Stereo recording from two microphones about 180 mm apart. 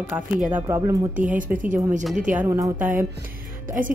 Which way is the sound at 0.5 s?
15° right (ahead or behind).